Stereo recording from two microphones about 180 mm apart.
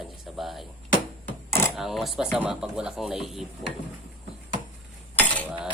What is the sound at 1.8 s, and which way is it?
Speech, centre (ahead or behind).